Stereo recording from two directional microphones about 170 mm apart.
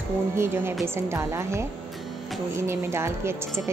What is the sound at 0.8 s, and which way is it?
A woman's voice, 15° right (ahead or behind).